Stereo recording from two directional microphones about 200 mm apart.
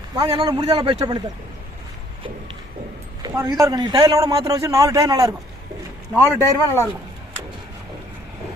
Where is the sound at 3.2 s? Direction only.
20° right (ahead or behind).